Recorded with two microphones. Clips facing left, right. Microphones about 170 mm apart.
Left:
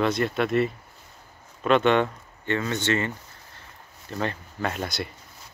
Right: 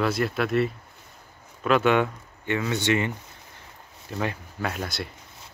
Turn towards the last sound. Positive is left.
turn(degrees=0)  # may be behind; listen again after turning